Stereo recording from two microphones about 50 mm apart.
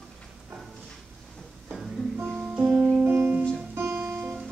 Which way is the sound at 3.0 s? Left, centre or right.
Right.